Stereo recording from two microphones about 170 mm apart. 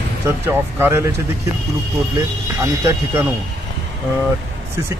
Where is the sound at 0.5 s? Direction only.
15° right (ahead or behind).